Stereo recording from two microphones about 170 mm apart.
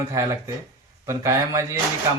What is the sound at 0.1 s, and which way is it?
A man's voice, 20° right (ahead or behind).